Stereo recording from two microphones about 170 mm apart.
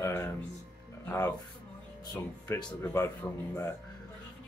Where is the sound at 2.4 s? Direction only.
20° left (ahead or behind).